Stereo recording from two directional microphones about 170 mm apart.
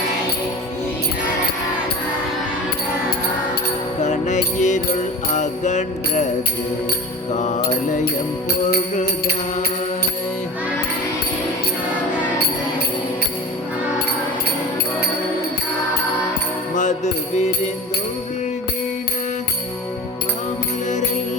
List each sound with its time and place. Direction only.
4.0 s music: 45° left (ahead or behind)
7.3 s music: 45° left (ahead or behind)
16.7 s music: 45° left (ahead or behind)